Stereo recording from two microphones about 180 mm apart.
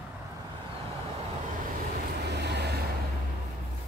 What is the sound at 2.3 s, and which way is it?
Vehicle, 70° right (ahead or behind).